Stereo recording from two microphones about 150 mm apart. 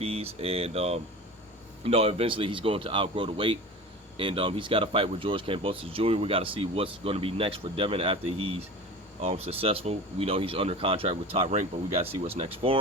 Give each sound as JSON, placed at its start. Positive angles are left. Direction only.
{"t": 0.0, "sound": "speech", "side_deg": -40}
{"t": 12.4, "sound": "speech", "side_deg": -35}